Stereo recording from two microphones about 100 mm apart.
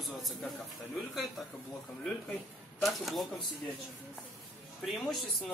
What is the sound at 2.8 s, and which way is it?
Speech, centre (ahead or behind).